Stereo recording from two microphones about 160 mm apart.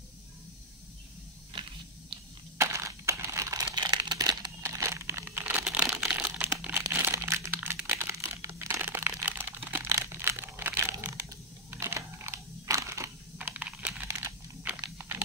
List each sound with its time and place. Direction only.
1.5 s a sound: 30° right (ahead or behind)
2.5 s crumpling: 20° right (ahead or behind)
14.0 s computer keyboard: 15° right (ahead or behind)
14.8 s typing: 15° right (ahead or behind)